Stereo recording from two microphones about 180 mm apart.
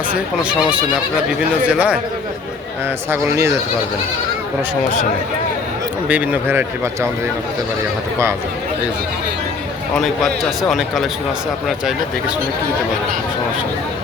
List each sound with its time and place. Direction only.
1.6 s speech: 5° right (ahead or behind)
3.1 s speech: 15° right (ahead or behind)
6.1 s speech: 10° right (ahead or behind)
9.9 s a man's voice: centre (ahead or behind)